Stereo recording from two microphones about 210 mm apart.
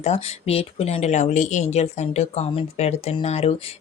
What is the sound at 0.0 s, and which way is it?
Speech, 30° left (ahead or behind).